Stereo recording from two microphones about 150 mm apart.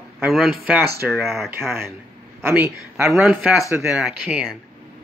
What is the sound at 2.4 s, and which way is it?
Speech, 15° right (ahead or behind).